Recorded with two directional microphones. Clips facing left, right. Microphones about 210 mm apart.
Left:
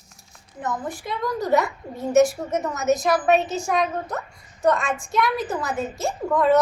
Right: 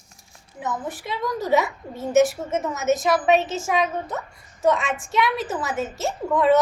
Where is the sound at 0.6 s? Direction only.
5° right (ahead or behind).